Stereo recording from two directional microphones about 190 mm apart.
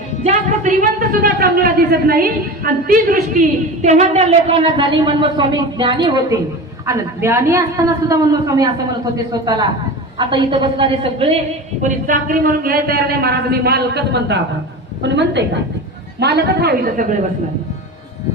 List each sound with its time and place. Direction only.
0.3 s a woman's voice: 45° right (ahead or behind); by 6.2 s 25° right (ahead or behind)
6.8 s a woman's voice: 15° right (ahead or behind)
11.8 s a woman's voice: 45° right (ahead or behind)